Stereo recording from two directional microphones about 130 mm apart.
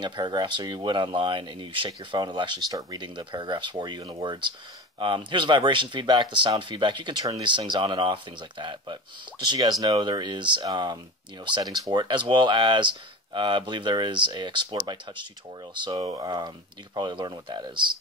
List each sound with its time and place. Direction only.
0.0 s speech: 35° right (ahead or behind)